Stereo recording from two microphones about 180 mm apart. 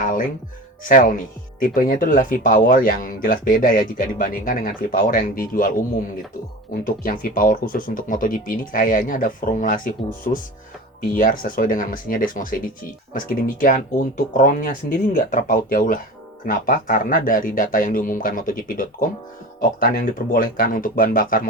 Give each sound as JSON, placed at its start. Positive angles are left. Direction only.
{"t": 0.0, "sound": "music", "side_deg": 50}
{"t": 0.9, "sound": "speech", "side_deg": 50}
{"t": 6.8, "sound": "speech", "side_deg": 50}